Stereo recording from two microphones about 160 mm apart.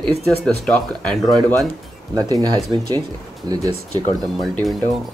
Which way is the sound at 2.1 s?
25° right (ahead or behind).